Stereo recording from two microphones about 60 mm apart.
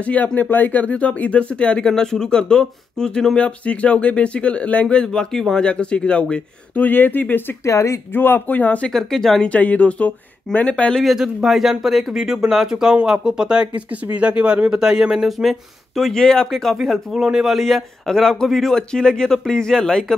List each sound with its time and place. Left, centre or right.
0.0 s speech: left
6.8 s speech: left
7.6 s speech: left
8.1 s speech: left
8.9 s speech: centre
9.5 s speech: left
11.0 s speech: centre
16.0 s a man's voice: centre
17.1 s a man's voice: centre